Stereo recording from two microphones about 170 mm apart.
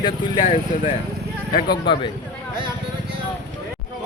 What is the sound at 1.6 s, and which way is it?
Speech, 30° left (ahead or behind).